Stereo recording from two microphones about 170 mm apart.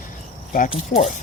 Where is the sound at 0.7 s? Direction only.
40° left (ahead or behind).